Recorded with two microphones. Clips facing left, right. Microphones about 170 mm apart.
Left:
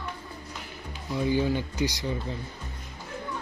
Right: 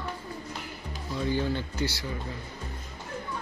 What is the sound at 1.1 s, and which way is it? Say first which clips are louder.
Speech: left 3 dB; 15° left (ahead or behind).